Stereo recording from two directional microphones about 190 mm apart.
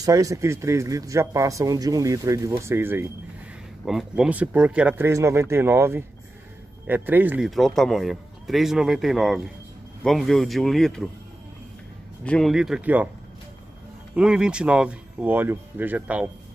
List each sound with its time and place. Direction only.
0.0 s a man's voice: 15° right (ahead or behind); by 11.1 s centre (ahead or behind)
12.3 s a man's voice: centre (ahead or behind)
14.1 s a man's voice: 5° right (ahead or behind)